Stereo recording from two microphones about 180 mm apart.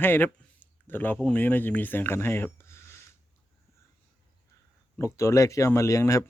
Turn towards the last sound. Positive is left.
turn(degrees=15)  # may be behind; listen again after turning